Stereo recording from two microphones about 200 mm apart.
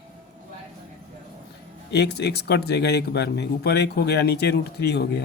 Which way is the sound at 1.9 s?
55° left (ahead or behind).